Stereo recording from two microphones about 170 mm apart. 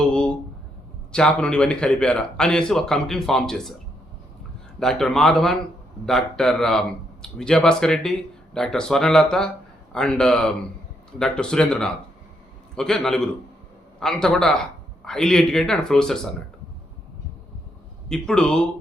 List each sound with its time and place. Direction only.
1.1 s a man's voice: 5° left (ahead or behind)
4.8 s a man's voice: centre (ahead or behind)
18.1 s a man's voice: 5° left (ahead or behind)